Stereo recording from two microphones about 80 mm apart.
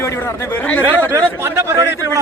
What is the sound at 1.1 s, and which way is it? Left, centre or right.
Speech, right.